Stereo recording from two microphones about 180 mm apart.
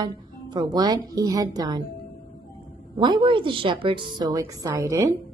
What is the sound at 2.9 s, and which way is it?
A woman's voice, 25° right (ahead or behind).